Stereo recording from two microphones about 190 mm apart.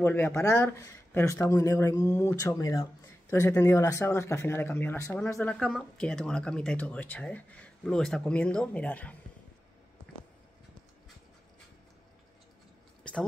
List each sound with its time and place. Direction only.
0.0 s speech: 10° left (ahead or behind)